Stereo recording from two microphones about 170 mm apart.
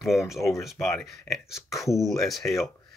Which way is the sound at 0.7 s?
20° left (ahead or behind).